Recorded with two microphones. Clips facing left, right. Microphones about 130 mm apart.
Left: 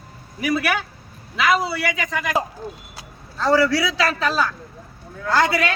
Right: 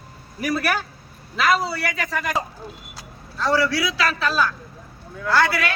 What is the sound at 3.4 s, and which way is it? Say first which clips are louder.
A man's voice: left 3 dB; 30° left (ahead or behind).